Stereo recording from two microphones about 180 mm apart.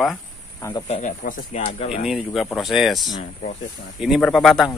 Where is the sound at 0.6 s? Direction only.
15° left (ahead or behind).